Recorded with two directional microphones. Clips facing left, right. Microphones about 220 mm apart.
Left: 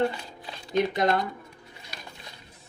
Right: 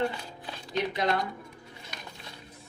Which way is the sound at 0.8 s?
45° left (ahead or behind).